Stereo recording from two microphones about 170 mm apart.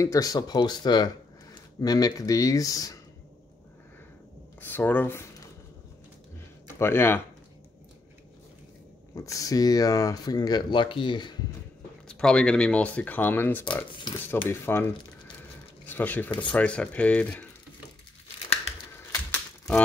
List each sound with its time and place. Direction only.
0.0 s speech: 20° left (ahead or behind)
4.6 s speech: 10° left (ahead or behind)
6.7 s speech: 15° left (ahead or behind)
9.1 s speech: 20° left (ahead or behind)
12.1 s speech: 5° left (ahead or behind)
13.9 s speech: 25° left (ahead or behind)
14.3 s speech: 15° left (ahead or behind)
15.9 s speech: 10° left (ahead or behind)